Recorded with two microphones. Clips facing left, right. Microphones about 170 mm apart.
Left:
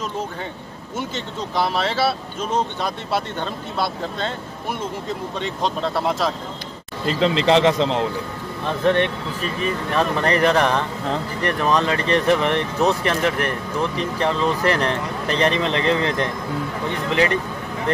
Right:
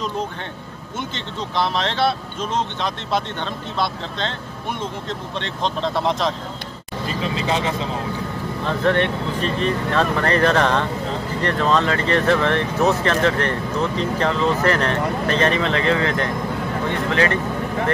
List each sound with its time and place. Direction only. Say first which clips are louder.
0.9 s speech: left 1 dB; 5° left (ahead or behind)
5.4 s speech: even; 5° left (ahead or behind)
7.2 s speech: left 7 dB; 90° left
8.6 s speech: left 1 dB; 20° left (ahead or behind)
9.4 s speech: right 2 dB; 5° left (ahead or behind)